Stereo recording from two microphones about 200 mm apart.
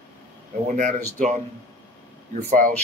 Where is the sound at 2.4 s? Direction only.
40° right (ahead or behind).